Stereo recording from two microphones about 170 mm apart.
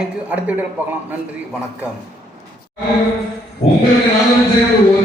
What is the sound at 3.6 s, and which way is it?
Chant, 40° left (ahead or behind).